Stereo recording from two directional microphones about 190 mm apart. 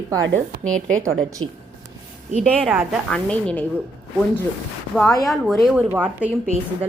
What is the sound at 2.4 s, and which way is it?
Speech, 5° left (ahead or behind).